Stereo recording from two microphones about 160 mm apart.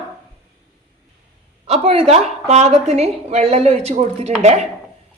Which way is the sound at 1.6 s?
40° right (ahead or behind).